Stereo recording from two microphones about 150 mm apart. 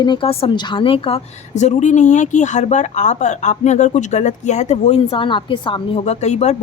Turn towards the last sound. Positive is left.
turn(degrees=50)  # may be behind; listen again after turning